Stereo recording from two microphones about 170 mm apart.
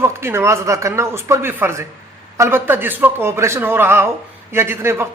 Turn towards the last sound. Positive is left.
turn(degrees=-15)  # may be behind; listen again after turning